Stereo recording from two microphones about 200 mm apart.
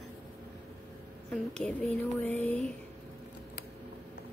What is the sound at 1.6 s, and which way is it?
A woman's voice, 5° left (ahead or behind).